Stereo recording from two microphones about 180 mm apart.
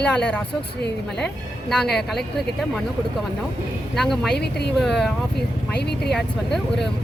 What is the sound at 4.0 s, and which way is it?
Speech, centre (ahead or behind).